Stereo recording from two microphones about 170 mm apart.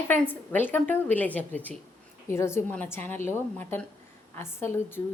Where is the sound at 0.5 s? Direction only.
10° left (ahead or behind).